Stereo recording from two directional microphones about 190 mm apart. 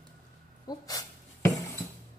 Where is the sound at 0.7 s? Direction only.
20° left (ahead or behind).